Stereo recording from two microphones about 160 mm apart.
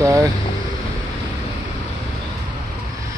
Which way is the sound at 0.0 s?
20° right (ahead or behind).